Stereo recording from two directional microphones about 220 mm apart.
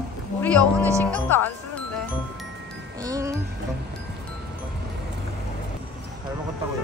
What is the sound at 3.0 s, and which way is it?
Speech, 15° right (ahead or behind).